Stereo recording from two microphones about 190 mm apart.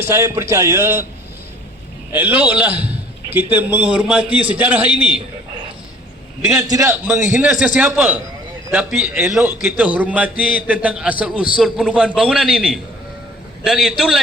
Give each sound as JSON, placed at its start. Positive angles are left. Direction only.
{"t": 0.0, "sound": "a man's voice", "side_deg": -15}
{"t": 2.1, "sound": "a man's voice", "side_deg": -10}
{"t": 6.5, "sound": "a man's voice", "side_deg": -15}
{"t": 7.3, "sound": "a man's voice", "side_deg": -5}